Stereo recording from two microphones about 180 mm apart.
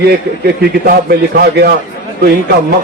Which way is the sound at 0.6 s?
60° right (ahead or behind).